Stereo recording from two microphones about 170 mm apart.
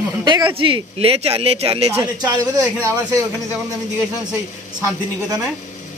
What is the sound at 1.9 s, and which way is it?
Speech, 20° right (ahead or behind).